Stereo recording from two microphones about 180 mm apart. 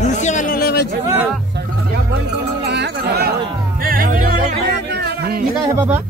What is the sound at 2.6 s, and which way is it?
Music, 70° right (ahead or behind).